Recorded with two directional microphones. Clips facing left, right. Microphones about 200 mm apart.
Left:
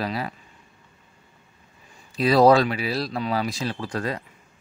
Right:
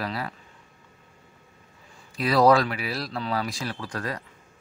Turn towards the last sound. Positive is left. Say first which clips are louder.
# left 4 dB
turn(degrees=25)  # may be behind; listen again after turning